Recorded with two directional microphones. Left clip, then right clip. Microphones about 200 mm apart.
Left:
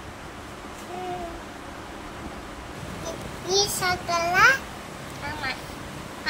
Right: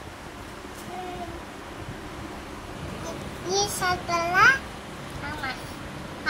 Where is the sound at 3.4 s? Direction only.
35° left (ahead or behind).